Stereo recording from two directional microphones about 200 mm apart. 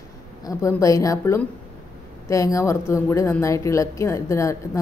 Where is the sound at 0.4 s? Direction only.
15° left (ahead or behind).